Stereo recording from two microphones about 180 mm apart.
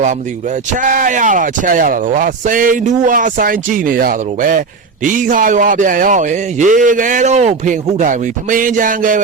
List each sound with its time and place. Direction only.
0.8 s speech: 45° right (ahead or behind)